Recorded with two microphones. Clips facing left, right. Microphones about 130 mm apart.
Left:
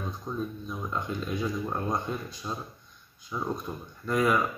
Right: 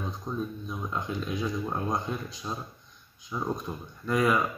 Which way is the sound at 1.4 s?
Centre (ahead or behind).